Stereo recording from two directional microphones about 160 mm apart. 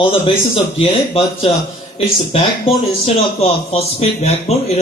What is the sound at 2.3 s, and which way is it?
Speech, 40° left (ahead or behind).